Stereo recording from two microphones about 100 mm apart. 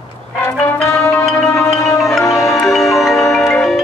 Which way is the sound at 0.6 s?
25° left (ahead or behind).